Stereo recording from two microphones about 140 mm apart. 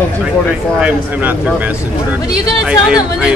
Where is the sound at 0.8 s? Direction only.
10° right (ahead or behind).